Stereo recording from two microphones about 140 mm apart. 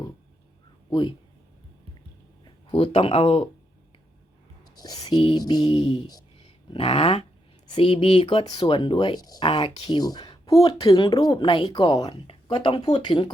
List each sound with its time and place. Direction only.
0.9 s speech: 35° left (ahead or behind)
2.4 s speech: 40° left (ahead or behind)
4.7 s a sound: 30° left (ahead or behind)
5.0 s speech: 35° left (ahead or behind)
6.4 s a sound: 45° left (ahead or behind)
7.7 s speech: 40° left (ahead or behind)